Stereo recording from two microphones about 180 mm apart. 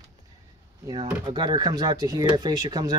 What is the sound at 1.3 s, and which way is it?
Speech, 25° right (ahead or behind).